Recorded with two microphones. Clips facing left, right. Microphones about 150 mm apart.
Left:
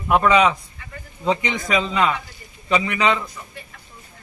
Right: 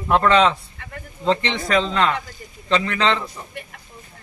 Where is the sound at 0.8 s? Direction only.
65° right (ahead or behind).